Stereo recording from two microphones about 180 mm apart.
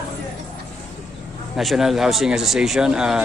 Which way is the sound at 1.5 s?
Centre (ahead or behind).